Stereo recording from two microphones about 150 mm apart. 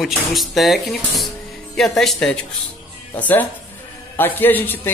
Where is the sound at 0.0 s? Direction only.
Centre (ahead or behind).